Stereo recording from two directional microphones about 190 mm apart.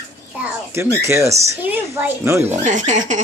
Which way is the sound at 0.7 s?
15° right (ahead or behind).